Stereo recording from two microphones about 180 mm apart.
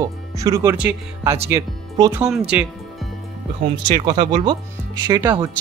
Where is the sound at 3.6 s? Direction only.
25° right (ahead or behind).